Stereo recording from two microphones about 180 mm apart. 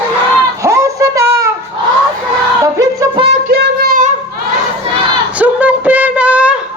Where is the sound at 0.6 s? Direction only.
15° right (ahead or behind).